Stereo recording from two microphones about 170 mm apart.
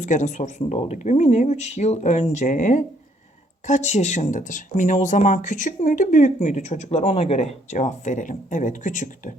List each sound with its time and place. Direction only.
0.0 s speech: 45° left (ahead or behind)